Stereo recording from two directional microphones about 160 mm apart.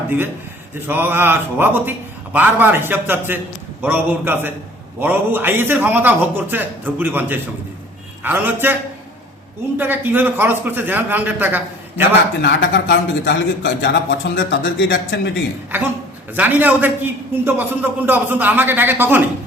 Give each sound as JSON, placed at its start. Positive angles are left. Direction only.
{"t": 0.9, "sound": "a man's voice", "side_deg": -15}
{"t": 9.7, "sound": "a man's voice", "side_deg": -10}
{"t": 12.4, "sound": "speech", "side_deg": 90}
{"t": 16.3, "sound": "a man's voice", "side_deg": -10}